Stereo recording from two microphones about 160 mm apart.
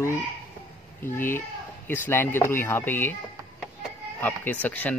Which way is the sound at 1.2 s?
15° left (ahead or behind).